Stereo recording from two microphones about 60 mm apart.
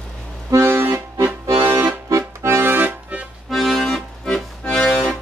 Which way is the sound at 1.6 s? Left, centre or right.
Right.